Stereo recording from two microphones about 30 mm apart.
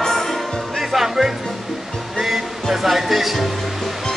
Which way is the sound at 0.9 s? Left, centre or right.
Centre.